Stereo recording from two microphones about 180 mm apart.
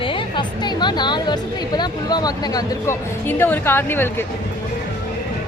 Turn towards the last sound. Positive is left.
turn(degrees=10)  # may be behind; listen again after turning